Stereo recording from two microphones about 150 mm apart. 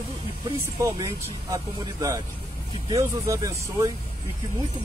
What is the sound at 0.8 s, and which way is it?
Speech, 20° right (ahead or behind).